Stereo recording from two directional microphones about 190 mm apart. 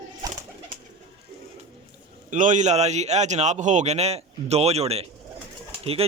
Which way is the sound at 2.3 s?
40° right (ahead or behind).